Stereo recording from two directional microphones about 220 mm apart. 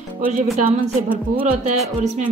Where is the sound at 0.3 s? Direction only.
35° right (ahead or behind).